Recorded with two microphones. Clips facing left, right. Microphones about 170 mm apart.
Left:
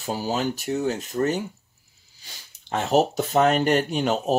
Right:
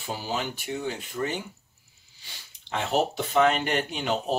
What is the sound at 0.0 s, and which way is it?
Speech, 40° left (ahead or behind).